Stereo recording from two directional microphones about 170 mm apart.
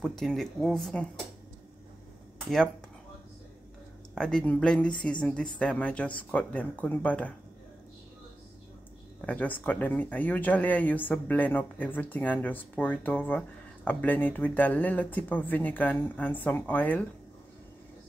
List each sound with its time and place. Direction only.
0.0 s a woman's voice: centre (ahead or behind)
4.1 s a woman's voice: 5° left (ahead or behind)
9.2 s speech: 10° left (ahead or behind)